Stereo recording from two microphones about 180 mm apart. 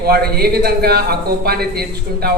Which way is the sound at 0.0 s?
60° right (ahead or behind).